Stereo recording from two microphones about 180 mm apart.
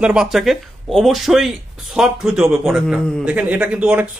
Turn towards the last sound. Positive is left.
turn(degrees=-5)  # may be behind; listen again after turning